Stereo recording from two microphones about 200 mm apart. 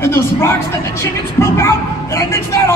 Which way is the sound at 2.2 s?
15° left (ahead or behind).